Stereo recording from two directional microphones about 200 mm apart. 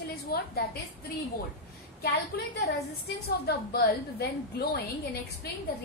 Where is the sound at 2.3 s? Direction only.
50° left (ahead or behind).